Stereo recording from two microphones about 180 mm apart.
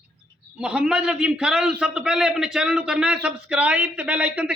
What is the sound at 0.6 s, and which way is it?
A man's voice, 5° right (ahead or behind).